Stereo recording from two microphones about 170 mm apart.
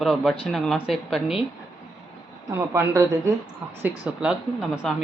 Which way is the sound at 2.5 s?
15° right (ahead or behind).